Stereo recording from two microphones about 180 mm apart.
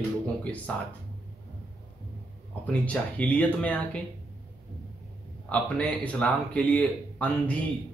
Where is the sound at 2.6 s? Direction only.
5° left (ahead or behind).